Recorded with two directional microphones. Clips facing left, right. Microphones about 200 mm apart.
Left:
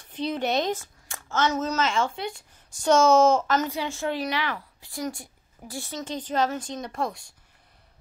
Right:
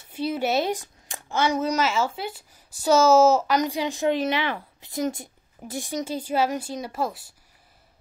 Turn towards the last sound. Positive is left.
turn(degrees=-5)  # may be behind; listen again after turning